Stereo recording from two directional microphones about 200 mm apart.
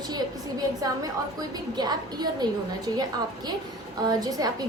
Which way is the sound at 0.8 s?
20° right (ahead or behind).